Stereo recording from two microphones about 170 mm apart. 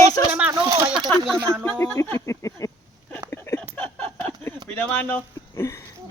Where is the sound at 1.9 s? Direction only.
15° left (ahead or behind).